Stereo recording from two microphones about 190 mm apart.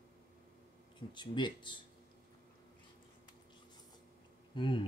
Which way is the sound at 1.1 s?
25° left (ahead or behind).